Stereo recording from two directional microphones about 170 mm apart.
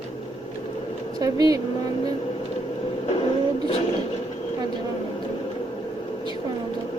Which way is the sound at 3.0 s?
35° left (ahead or behind).